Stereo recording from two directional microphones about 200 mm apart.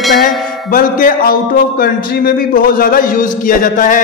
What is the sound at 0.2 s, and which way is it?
A man's voice, 45° left (ahead or behind).